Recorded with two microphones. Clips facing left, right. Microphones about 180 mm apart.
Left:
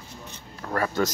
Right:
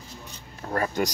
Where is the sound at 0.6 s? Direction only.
35° right (ahead or behind).